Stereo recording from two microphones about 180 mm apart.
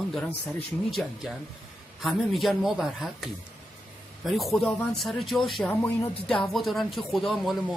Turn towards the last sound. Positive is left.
turn(degrees=0)  # may be behind; listen again after turning